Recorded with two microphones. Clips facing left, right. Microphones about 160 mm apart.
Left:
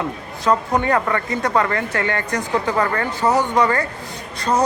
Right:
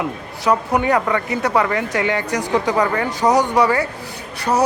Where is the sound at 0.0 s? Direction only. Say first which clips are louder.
Right 1 dB; 10° right (ahead or behind).